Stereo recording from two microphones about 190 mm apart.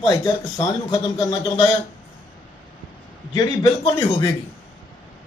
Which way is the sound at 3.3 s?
20° left (ahead or behind).